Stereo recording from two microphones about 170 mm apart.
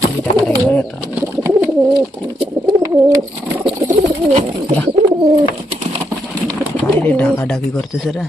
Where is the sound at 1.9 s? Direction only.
25° right (ahead or behind).